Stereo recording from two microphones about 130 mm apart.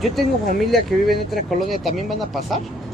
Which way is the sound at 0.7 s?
Centre (ahead or behind).